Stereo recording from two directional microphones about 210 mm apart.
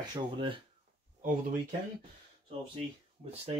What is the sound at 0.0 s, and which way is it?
Speech, 20° right (ahead or behind).